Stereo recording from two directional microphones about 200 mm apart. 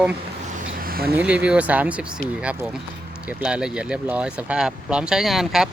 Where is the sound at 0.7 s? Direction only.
45° right (ahead or behind).